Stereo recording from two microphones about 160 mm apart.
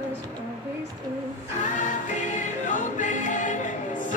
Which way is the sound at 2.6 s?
50° left (ahead or behind).